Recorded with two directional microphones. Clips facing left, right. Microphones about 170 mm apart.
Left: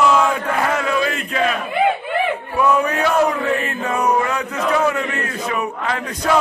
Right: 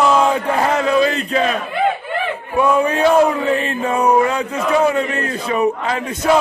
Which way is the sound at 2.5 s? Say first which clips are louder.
Right 3 dB; 25° right (ahead or behind).